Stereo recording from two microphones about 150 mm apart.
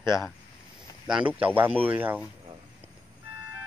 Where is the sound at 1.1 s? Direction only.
10° right (ahead or behind).